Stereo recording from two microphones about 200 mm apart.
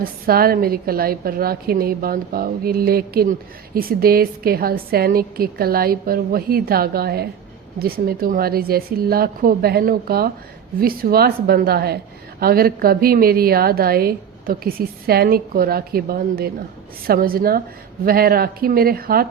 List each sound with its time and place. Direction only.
0.0 s a woman's voice: 50° right (ahead or behind)